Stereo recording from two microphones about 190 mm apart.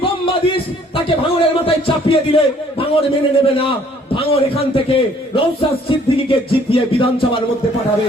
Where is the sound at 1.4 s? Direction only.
30° left (ahead or behind).